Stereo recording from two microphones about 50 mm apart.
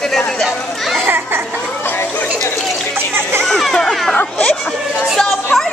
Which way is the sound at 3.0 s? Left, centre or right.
Right.